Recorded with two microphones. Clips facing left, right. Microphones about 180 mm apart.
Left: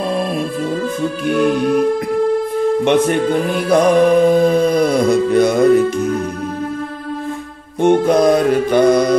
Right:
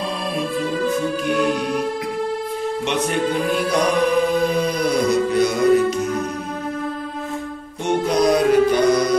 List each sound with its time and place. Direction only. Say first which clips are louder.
0.1 s music: left 7 dB; 50° left (ahead or behind)
1.4 s music: left 8 dB; 50° left (ahead or behind)
2.8 s music: left 6 dB; 55° left (ahead or behind)
7.8 s music: left 6 dB; 55° left (ahead or behind)